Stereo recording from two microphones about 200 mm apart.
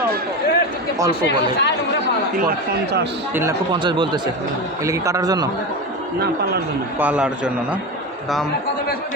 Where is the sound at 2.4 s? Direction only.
50° right (ahead or behind).